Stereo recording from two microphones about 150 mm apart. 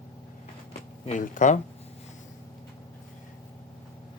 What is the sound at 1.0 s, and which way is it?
Speech, 55° left (ahead or behind).